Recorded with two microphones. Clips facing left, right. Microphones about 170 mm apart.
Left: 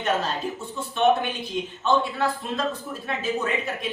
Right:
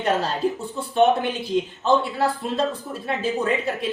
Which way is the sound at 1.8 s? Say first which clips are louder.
Even; 30° right (ahead or behind).